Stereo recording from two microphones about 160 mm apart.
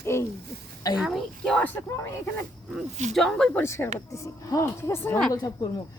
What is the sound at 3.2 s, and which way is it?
Speech, 5° left (ahead or behind).